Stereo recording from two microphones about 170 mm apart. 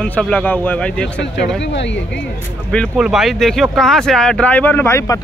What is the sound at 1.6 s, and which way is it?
Speech, 90° left.